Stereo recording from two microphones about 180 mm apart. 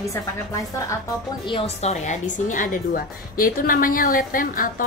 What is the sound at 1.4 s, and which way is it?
A woman's voice, 30° left (ahead or behind).